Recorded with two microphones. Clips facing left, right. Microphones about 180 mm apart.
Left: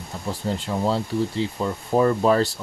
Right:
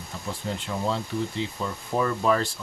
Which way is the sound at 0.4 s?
40° left (ahead or behind).